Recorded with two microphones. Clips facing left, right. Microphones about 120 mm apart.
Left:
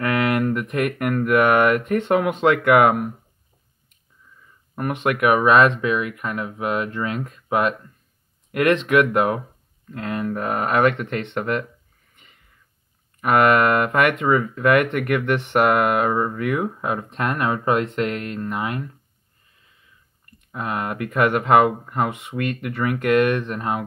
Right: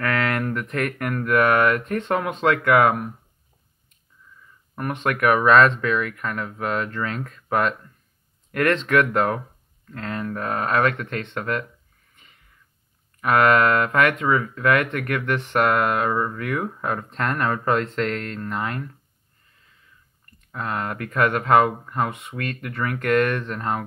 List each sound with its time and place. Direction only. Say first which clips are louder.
0.0 s a sound: left 3 dB; 15° left (ahead or behind)
1.2 s speech: left 2 dB; 10° left (ahead or behind)
5.2 s speech: even; 10° left (ahead or behind)
13.2 s speech: left 1 dB; 15° left (ahead or behind)
14.2 s speech: left 2 dB; 25° left (ahead or behind)
20.5 s speech: left 2 dB; 10° left (ahead or behind)